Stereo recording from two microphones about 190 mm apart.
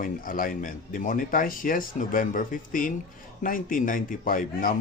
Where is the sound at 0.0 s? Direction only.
45° left (ahead or behind).